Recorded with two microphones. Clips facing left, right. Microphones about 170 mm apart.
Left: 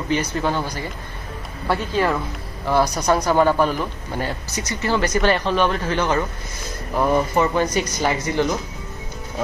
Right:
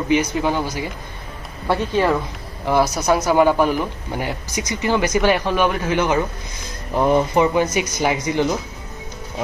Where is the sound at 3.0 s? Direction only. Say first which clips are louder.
Right 2 dB; 5° right (ahead or behind).